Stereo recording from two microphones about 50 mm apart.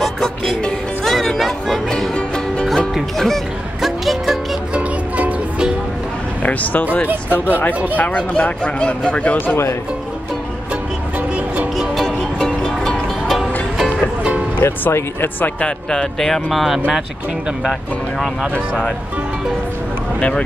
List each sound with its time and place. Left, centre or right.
0.0 s music: centre
2.1 s music: centre
2.9 s music: centre
4.7 s music: right
6.4 s a sound: left
7.9 s speech: left
11.1 s music: right
11.7 s music: centre
14.6 s speech: left
15.6 s speech: centre
20.2 s speech: left